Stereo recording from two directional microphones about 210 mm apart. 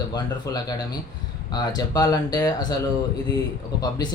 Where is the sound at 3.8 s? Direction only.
20° left (ahead or behind).